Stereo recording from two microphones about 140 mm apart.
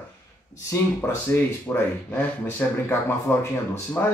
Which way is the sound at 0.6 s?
20° left (ahead or behind).